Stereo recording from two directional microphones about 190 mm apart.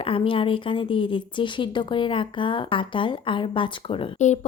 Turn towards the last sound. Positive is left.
turn(degrees=35)  # may be behind; listen again after turning